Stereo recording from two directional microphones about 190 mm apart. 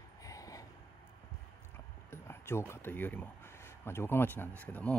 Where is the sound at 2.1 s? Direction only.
15° left (ahead or behind).